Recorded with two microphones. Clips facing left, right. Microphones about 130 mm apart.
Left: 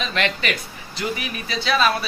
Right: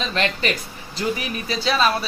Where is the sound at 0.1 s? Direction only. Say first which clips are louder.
Right 2 dB; 30° right (ahead or behind).